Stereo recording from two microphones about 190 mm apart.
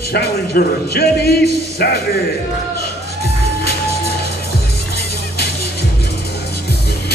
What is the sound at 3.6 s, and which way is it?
Music, 55° left (ahead or behind).